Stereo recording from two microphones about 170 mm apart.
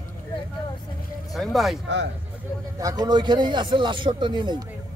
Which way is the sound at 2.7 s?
20° right (ahead or behind).